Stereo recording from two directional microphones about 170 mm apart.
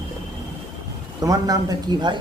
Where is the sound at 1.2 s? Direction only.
20° right (ahead or behind).